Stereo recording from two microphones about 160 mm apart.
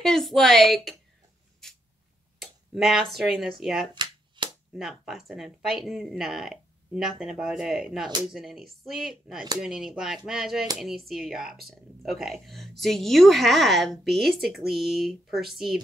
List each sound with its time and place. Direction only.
0.0 s a woman's voice: centre (ahead or behind)
2.3 s speech: centre (ahead or behind)
3.9 s a sound: 30° right (ahead or behind)
4.7 s a woman's voice: centre (ahead or behind)